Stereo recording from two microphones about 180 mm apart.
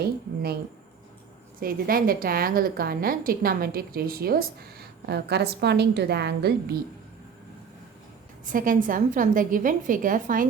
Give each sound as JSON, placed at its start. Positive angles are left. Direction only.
{"t": 1.5, "sound": "a woman's voice", "side_deg": -50}
{"t": 8.4, "sound": "a woman's voice", "side_deg": -50}